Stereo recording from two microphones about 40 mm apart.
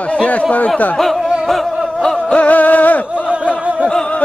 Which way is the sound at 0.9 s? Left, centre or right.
Centre.